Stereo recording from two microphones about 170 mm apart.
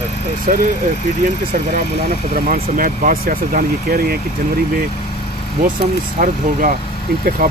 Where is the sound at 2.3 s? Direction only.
55° right (ahead or behind).